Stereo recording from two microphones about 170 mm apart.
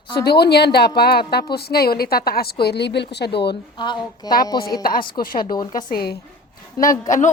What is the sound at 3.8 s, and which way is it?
Speech, 25° left (ahead or behind).